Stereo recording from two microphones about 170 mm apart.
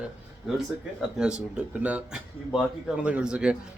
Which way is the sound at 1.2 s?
5° right (ahead or behind).